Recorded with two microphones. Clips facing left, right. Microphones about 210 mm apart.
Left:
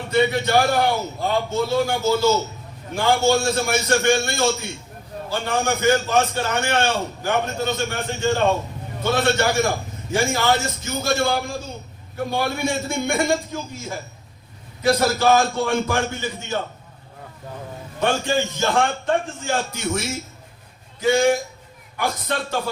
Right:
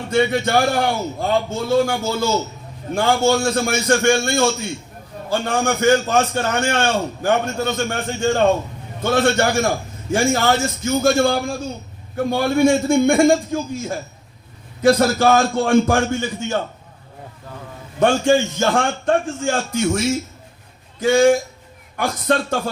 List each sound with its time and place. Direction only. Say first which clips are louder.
0.1 s a man's voice: right 1 dB; 50° right (ahead or behind)
18.0 s a man's voice: right 6 dB; 50° right (ahead or behind)